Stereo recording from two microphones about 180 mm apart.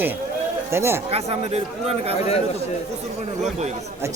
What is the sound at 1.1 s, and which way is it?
Speech, 35° right (ahead or behind).